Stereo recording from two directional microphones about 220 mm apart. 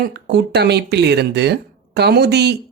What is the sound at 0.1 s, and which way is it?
Speech, 50° right (ahead or behind).